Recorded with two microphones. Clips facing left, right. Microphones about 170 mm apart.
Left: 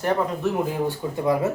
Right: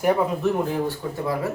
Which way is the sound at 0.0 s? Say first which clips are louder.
Right 2 dB; 5° right (ahead or behind).